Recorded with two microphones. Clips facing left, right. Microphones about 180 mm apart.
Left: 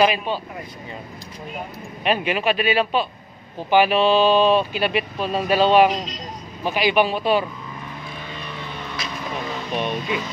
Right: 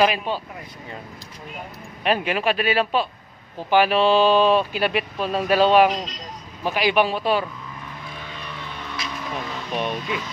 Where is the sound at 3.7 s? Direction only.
Centre (ahead or behind).